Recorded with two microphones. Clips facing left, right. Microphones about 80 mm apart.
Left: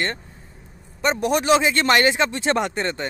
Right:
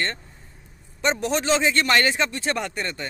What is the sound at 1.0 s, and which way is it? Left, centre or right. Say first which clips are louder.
Speech: left 3 dB; centre.